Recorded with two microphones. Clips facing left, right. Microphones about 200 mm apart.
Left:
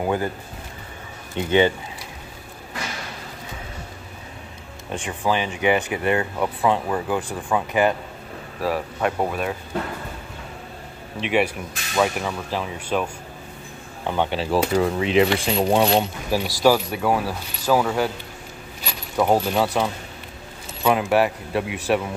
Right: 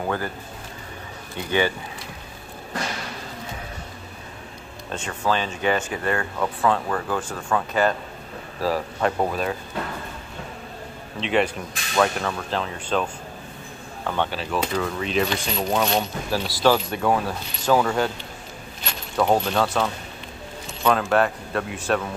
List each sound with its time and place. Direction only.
0.0 s speech: 15° left (ahead or behind)
1.3 s coin: 20° left (ahead or behind)
4.9 s speech: 15° left (ahead or behind)
8.6 s speech: centre (ahead or behind)
11.1 s speech: 10° left (ahead or behind)
14.3 s coin: 30° left (ahead or behind)
16.3 s speech: 15° left (ahead or behind)